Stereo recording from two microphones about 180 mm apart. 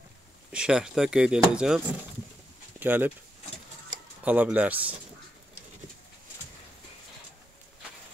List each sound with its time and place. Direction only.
0.5 s speech: 5° right (ahead or behind)
2.8 s speech: 10° right (ahead or behind)
4.2 s speech: 10° right (ahead or behind)